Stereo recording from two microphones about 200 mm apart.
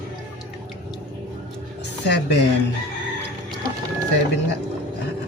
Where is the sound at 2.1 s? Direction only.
60° left (ahead or behind).